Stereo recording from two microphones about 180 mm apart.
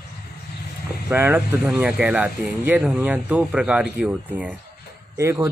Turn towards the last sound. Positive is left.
turn(degrees=-15)  # may be behind; listen again after turning